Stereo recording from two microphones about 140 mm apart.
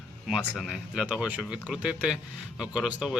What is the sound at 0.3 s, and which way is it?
Speech, centre (ahead or behind).